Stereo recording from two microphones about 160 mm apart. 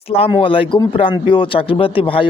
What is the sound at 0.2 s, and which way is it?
Speech, 35° left (ahead or behind).